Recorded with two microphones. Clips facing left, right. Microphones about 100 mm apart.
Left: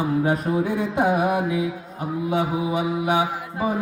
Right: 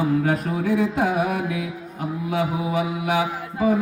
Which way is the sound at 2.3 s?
20° left (ahead or behind).